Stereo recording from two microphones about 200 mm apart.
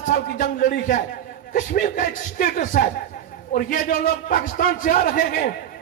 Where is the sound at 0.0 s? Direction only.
40° left (ahead or behind).